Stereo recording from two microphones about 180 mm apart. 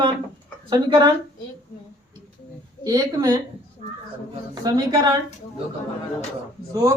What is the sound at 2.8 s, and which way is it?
Speech, 20° right (ahead or behind).